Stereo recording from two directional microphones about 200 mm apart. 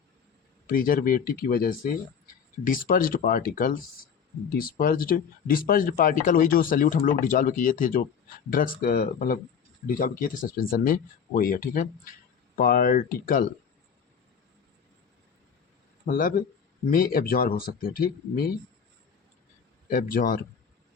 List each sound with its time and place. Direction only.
0.7 s speech: 45° left (ahead or behind)
16.0 s speech: 45° left (ahead or behind)
19.9 s speech: 45° left (ahead or behind)